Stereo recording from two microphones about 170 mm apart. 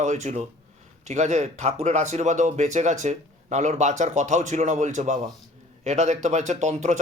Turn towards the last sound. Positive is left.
turn(degrees=-45)  # may be behind; listen again after turning